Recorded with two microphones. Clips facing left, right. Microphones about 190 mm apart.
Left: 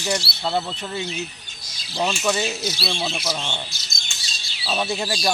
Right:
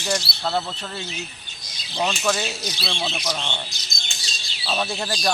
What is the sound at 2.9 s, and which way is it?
Speech, 15° left (ahead or behind).